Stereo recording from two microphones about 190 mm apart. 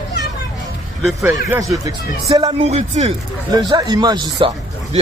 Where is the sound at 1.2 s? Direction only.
15° right (ahead or behind); by 3.1 s 35° right (ahead or behind).